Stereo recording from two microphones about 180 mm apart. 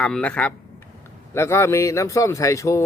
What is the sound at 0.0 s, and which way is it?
Speech, 5° left (ahead or behind).